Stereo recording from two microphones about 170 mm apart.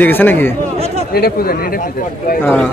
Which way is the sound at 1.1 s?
65° left (ahead or behind).